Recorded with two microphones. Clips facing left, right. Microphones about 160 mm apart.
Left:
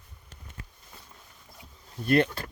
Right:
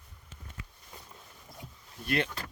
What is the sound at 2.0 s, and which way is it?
Speech, 45° left (ahead or behind).